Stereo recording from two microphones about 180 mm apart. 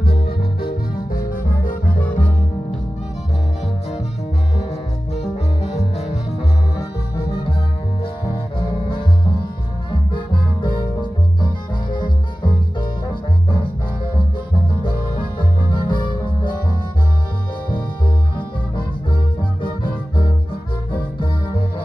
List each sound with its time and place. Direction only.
1.1 s music: 50° left (ahead or behind)
5.1 s music: 35° left (ahead or behind)
8.5 s music: 30° left (ahead or behind)
14.8 s music: 25° left (ahead or behind)
19.6 s music: 30° left (ahead or behind)